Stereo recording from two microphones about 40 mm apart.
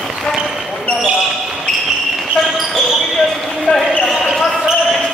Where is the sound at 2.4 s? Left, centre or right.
Centre.